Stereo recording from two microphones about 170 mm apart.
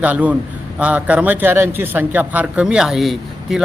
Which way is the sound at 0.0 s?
10° right (ahead or behind).